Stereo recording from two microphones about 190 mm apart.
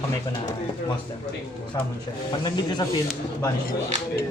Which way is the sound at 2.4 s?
20° left (ahead or behind).